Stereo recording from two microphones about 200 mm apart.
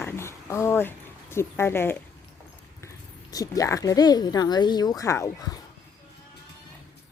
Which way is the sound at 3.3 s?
15° left (ahead or behind).